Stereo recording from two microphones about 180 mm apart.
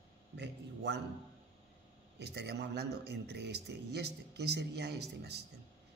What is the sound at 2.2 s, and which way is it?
A man's voice, 65° right (ahead or behind).